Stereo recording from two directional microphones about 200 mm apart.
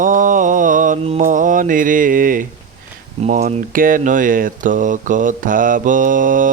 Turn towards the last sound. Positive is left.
turn(degrees=-40)  # may be behind; listen again after turning